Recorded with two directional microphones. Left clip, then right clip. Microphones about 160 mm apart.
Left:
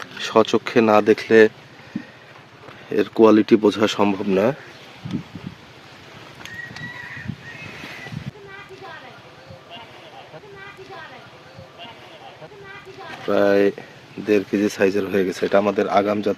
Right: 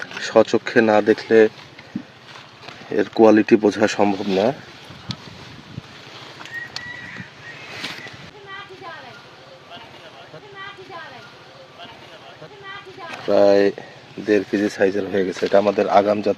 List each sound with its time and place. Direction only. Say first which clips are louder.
0.0 s speech: right 2 dB; 20° left (ahead or behind)
2.9 s speech: right 1 dB; 20° left (ahead or behind)
3.9 s speech: right 1 dB; 35° left (ahead or behind)
13.2 s speech: right 3 dB; 15° left (ahead or behind)